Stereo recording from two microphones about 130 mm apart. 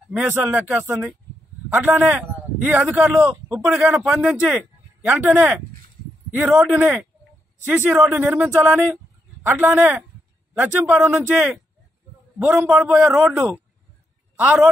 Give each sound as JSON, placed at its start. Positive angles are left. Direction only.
{"t": 0.3, "sound": "a man's voice", "side_deg": -15}
{"t": 3.9, "sound": "a man's voice", "side_deg": 0}
{"t": 5.0, "sound": "speech", "side_deg": -15}
{"t": 11.3, "sound": "a man's voice", "side_deg": 0}